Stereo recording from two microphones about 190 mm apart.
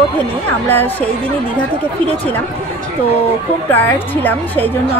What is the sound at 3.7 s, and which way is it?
A woman's voice, 10° left (ahead or behind).